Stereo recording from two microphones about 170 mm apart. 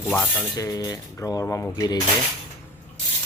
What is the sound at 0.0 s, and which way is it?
Speech, 10° left (ahead or behind).